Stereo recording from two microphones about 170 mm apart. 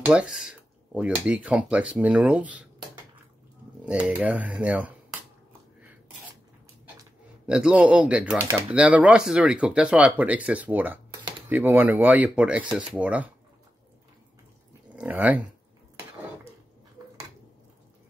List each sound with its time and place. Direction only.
0.0 s speech: 5° right (ahead or behind)
3.8 s speech: 5° right (ahead or behind)
7.4 s speech: 5° right (ahead or behind)
15.0 s speech: 10° right (ahead or behind)